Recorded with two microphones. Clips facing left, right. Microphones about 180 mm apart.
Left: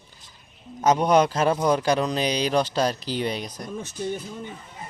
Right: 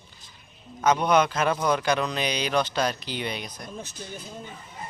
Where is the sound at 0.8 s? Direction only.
40° left (ahead or behind).